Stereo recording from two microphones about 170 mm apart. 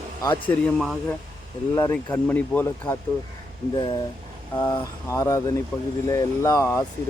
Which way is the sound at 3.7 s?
30° left (ahead or behind).